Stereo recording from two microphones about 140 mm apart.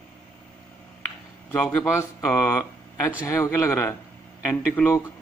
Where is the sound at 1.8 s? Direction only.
20° left (ahead or behind).